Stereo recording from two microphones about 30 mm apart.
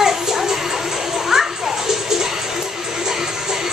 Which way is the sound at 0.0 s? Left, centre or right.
Centre.